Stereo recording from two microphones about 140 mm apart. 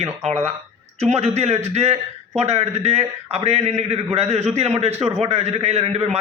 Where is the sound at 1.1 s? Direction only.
50° right (ahead or behind).